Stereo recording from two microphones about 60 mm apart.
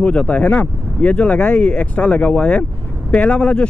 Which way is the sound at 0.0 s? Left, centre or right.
Left.